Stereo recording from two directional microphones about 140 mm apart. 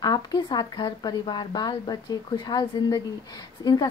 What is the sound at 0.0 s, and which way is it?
A woman's voice, 30° left (ahead or behind).